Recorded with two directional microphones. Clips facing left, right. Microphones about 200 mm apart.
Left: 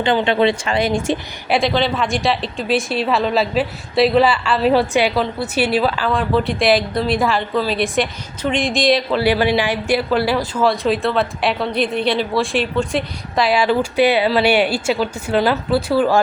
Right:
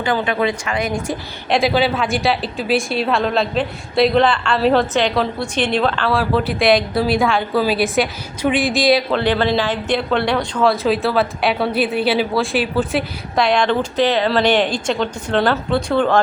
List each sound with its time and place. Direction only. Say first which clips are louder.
0.0 s speech: left 3 dB; 25° left (ahead or behind)
1.5 s a woman's voice: right 1 dB; centre (ahead or behind)